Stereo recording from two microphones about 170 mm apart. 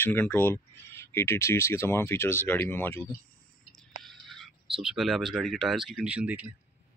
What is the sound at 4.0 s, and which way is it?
Whispering, centre (ahead or behind).